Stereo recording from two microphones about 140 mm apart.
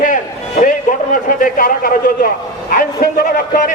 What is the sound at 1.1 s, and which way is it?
A man's voice, 80° left.